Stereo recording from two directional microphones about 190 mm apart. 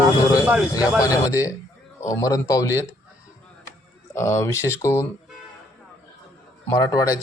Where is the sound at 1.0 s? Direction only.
15° left (ahead or behind).